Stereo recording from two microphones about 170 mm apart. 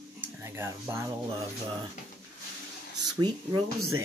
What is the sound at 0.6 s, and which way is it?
Speech, 15° right (ahead or behind).